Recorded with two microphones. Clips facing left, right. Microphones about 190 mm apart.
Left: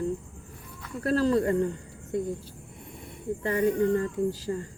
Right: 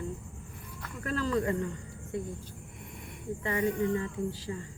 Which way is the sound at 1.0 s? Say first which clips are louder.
Left 6 dB; 35° left (ahead or behind).